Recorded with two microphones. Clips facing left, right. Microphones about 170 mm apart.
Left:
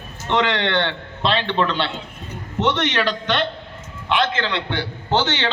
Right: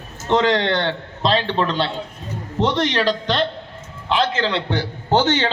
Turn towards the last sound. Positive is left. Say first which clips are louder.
# right 3 dB
turn(degrees=-45)  # may be behind; listen again after turning